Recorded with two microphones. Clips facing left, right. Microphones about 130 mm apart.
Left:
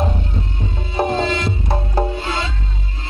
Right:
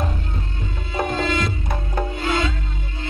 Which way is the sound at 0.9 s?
25° left (ahead or behind).